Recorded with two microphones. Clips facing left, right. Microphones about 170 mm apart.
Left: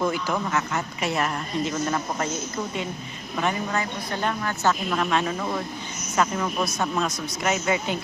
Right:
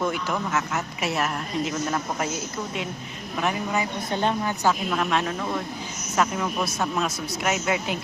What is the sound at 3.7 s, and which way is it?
Speech, 20° right (ahead or behind).